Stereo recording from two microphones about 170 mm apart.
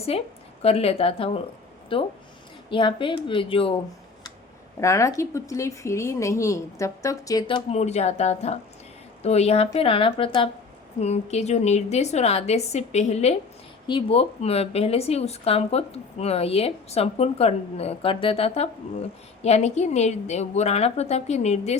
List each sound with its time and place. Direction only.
0.1 s a woman's voice: 35° left (ahead or behind)
4.8 s a woman's voice: 15° left (ahead or behind)
7.7 s speech: 40° left (ahead or behind)